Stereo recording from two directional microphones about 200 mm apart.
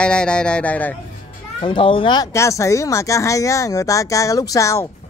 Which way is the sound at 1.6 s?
25° left (ahead or behind).